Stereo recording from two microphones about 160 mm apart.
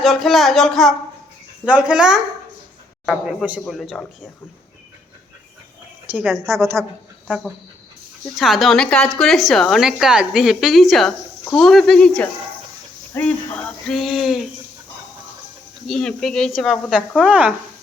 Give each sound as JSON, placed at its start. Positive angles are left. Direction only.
{"t": 0.0, "sound": "a woman's voice", "side_deg": 0}
{"t": 6.1, "sound": "a woman's voice", "side_deg": -10}
{"t": 8.4, "sound": "a woman's voice", "side_deg": 0}
{"t": 15.9, "sound": "a woman's voice", "side_deg": 5}